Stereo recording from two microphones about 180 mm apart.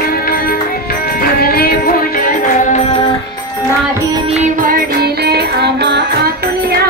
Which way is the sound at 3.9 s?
20° right (ahead or behind).